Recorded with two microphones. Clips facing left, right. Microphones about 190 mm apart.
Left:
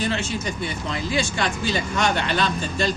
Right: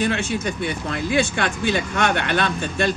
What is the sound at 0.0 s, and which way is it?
Speech, 55° right (ahead or behind).